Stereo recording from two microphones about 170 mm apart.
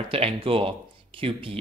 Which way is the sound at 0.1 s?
35° right (ahead or behind).